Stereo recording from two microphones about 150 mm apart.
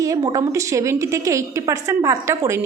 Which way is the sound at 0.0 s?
20° right (ahead or behind).